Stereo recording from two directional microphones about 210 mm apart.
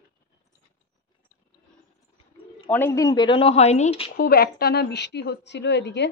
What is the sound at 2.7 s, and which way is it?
Speech, 10° left (ahead or behind).